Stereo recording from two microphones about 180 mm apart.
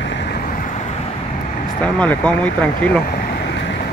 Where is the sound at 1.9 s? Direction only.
5° left (ahead or behind).